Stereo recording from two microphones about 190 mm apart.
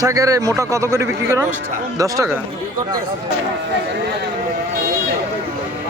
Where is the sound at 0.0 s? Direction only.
15° right (ahead or behind).